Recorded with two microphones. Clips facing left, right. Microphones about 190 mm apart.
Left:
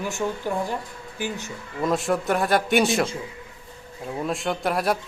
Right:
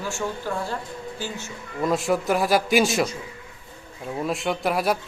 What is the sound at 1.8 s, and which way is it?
A woman's voice, centre (ahead or behind).